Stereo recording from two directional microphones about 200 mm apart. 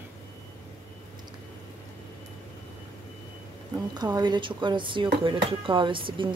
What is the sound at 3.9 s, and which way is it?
Speech, 20° right (ahead or behind).